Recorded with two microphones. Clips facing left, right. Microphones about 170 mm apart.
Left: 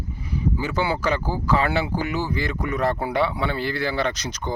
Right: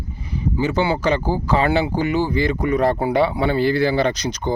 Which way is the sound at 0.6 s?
25° right (ahead or behind).